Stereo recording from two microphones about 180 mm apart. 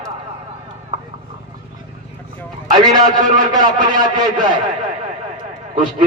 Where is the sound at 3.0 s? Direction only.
50° right (ahead or behind).